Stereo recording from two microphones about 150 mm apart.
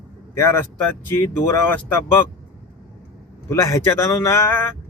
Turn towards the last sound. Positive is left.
turn(degrees=15)  # may be behind; listen again after turning